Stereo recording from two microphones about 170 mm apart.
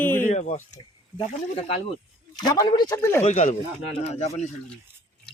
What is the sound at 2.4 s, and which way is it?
Speech, 25° left (ahead or behind).